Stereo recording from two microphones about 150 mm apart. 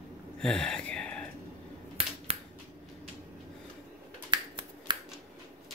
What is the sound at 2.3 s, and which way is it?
Finger snapping, 40° right (ahead or behind).